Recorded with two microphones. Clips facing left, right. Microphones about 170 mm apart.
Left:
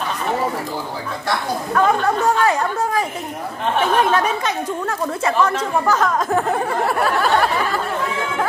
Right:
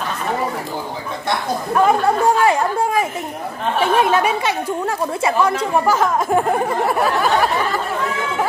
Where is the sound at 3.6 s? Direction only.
5° right (ahead or behind).